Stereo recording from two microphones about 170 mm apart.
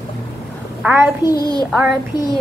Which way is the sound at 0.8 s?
10° right (ahead or behind).